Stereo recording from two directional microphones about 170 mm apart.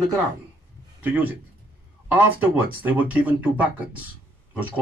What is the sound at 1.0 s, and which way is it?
Speech, 10° right (ahead or behind).